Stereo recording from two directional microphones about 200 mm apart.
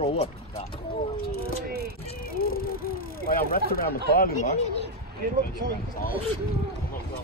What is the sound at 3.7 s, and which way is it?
Speech, 45° left (ahead or behind).